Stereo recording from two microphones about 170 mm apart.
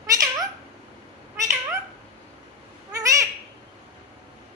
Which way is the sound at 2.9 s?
20° right (ahead or behind).